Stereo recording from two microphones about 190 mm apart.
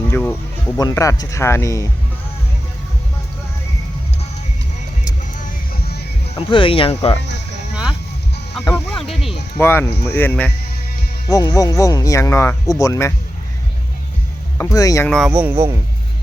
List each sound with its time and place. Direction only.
0.1 s speech: 10° left (ahead or behind)
5.7 s music: 55° left (ahead or behind)
6.3 s speech: 30° left (ahead or behind)
7.2 s speech: 65° left (ahead or behind)
8.6 s speech: 10° left (ahead or behind)
9.6 s speech: 15° left (ahead or behind)
11.3 s speech: 20° left (ahead or behind)
14.6 s speech: 15° left (ahead or behind)
15.0 s speech: centre (ahead or behind)